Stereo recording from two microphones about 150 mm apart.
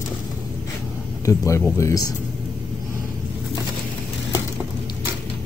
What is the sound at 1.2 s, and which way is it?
Speech, 20° left (ahead or behind).